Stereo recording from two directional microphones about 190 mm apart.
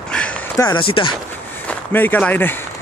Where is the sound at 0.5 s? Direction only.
20° left (ahead or behind).